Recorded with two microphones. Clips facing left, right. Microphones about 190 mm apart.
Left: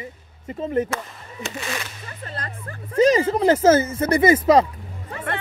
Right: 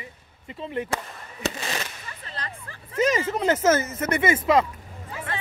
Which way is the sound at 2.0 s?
45° left (ahead or behind).